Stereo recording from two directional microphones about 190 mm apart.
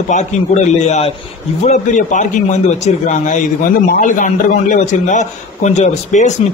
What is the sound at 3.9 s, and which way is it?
A man's voice, 45° left (ahead or behind).